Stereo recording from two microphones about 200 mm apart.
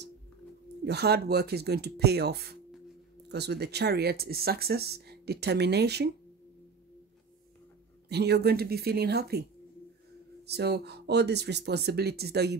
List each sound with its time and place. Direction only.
0.8 s speech: 55° right (ahead or behind)
8.1 s speech: 55° right (ahead or behind)